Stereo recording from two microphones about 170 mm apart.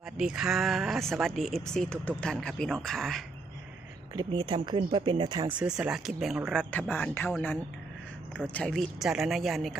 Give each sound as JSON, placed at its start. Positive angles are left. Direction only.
{"t": 0.2, "sound": "speech", "side_deg": -5}
{"t": 4.1, "sound": "speech", "side_deg": -25}
{"t": 5.5, "sound": "a man's voice", "side_deg": -5}